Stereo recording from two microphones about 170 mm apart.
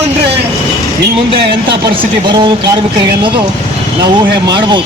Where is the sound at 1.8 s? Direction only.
25° right (ahead or behind).